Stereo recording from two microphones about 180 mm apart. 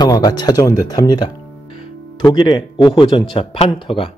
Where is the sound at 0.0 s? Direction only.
20° left (ahead or behind).